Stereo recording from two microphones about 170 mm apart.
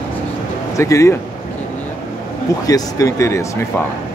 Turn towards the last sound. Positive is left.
turn(degrees=15)  # may be behind; listen again after turning